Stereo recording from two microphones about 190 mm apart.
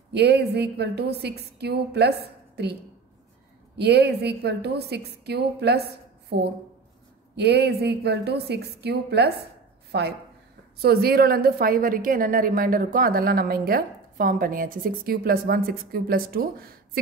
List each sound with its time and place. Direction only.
0.1 s a woman's voice: 60° right (ahead or behind)